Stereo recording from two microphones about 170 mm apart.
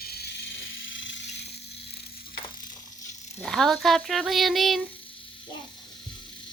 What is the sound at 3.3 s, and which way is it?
Speech, centre (ahead or behind).